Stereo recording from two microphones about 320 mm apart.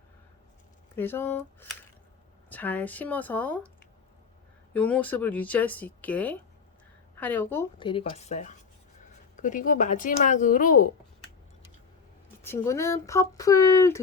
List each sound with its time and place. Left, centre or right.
0.9 s speech: centre
4.7 s speech: centre; by 10.8 s left
12.4 s speech: centre